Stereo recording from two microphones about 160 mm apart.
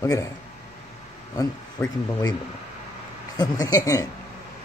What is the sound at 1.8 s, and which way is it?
Speech, 15° left (ahead or behind).